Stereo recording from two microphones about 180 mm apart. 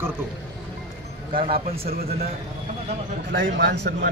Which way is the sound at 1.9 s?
60° right (ahead or behind).